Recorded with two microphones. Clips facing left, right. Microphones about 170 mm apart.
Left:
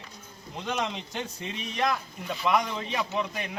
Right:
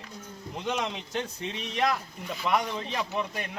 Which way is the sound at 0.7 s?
Centre (ahead or behind).